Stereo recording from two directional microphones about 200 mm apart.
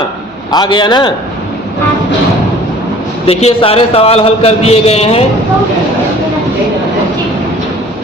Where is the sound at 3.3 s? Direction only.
30° left (ahead or behind).